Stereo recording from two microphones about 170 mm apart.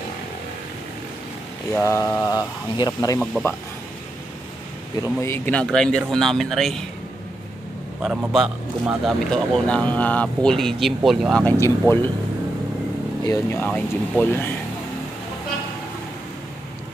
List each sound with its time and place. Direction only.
1.8 s speech: 15° left (ahead or behind)
5.2 s a man's voice: 10° left (ahead or behind)
8.0 s a man's voice: 5° right (ahead or behind)
11.4 s speech: 10° left (ahead or behind)
13.2 s speech: 20° left (ahead or behind)
13.7 s speech: 5° left (ahead or behind)